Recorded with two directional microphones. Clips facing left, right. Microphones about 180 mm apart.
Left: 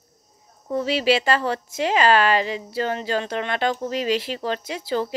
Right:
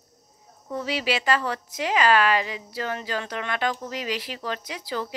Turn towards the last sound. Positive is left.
turn(degrees=30)  # may be behind; listen again after turning